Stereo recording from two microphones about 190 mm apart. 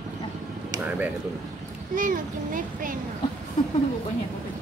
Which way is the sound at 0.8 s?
10° right (ahead or behind).